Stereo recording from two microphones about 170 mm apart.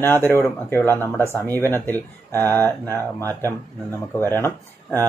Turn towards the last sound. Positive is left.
turn(degrees=15)  # may be behind; listen again after turning